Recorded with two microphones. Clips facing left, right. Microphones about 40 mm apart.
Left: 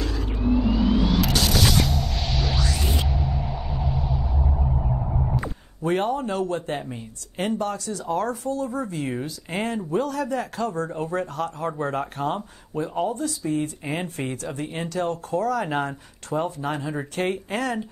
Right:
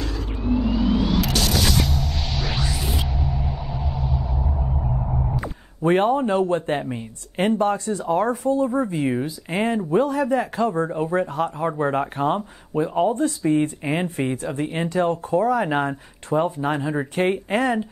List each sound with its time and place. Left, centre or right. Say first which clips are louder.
0.7 s a sound: even; centre
5.8 s speech: right 5 dB; right
13.1 s speech: right 6 dB; right
14.1 s speech: right 5 dB; right